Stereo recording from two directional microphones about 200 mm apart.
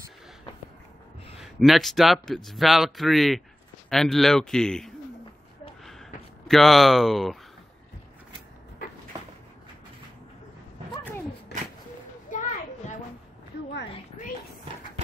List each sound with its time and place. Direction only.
1.4 s speech: centre (ahead or behind)
5.9 s a sound: centre (ahead or behind)
12.3 s children playing: 40° left (ahead or behind)